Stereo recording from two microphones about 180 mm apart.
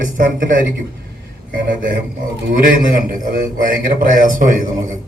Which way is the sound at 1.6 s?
50° right (ahead or behind).